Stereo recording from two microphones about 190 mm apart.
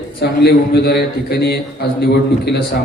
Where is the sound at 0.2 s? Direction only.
60° left (ahead or behind).